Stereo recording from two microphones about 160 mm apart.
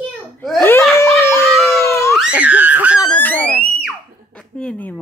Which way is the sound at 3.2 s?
10° left (ahead or behind).